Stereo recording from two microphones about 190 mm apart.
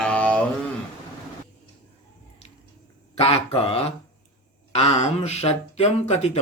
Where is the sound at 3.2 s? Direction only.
30° left (ahead or behind).